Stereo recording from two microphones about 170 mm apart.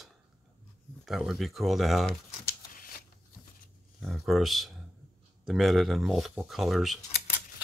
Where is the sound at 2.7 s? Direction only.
55° left (ahead or behind).